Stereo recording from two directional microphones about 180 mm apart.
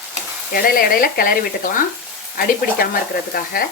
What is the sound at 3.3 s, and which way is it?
Stir, 55° left (ahead or behind).